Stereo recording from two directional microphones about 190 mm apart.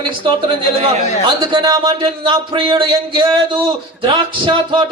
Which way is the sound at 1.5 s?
25° right (ahead or behind).